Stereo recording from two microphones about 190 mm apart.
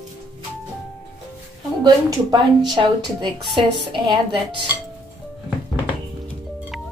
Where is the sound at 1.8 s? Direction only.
20° right (ahead or behind).